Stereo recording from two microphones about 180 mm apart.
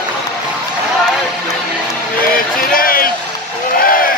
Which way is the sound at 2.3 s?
55° left (ahead or behind).